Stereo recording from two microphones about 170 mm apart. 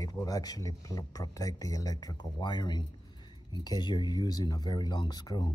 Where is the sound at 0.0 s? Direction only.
20° left (ahead or behind).